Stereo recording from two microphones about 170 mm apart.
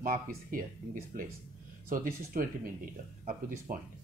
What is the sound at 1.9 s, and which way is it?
Speech, 55° right (ahead or behind).